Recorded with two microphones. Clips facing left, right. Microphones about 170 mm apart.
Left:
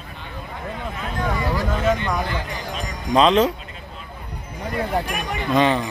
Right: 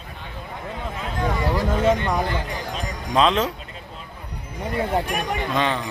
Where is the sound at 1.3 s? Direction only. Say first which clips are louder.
Right 3 dB; 30° right (ahead or behind).